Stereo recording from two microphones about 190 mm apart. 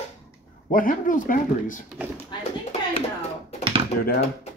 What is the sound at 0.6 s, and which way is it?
Speech, 45° left (ahead or behind).